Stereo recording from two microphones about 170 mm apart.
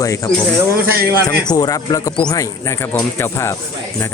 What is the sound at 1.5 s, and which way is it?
Speech, 25° left (ahead or behind).